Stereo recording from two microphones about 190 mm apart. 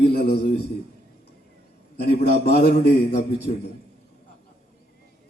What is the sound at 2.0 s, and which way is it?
Speech, 55° left (ahead or behind).